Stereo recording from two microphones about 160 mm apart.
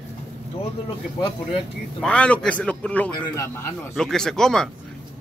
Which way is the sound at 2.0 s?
5° left (ahead or behind).